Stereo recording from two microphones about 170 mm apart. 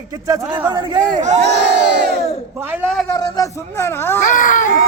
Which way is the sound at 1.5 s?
80° right.